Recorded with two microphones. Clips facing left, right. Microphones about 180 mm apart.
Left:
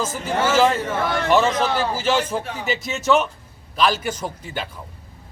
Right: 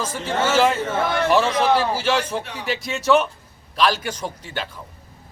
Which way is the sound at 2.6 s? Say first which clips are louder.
Right 1 dB; centre (ahead or behind).